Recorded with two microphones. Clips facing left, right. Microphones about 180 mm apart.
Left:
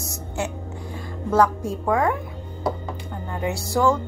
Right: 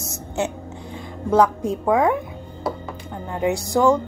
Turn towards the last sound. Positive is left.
turn(degrees=-15)  # may be behind; listen again after turning